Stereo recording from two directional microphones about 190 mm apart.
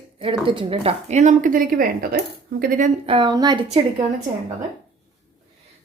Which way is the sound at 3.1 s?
20° right (ahead or behind).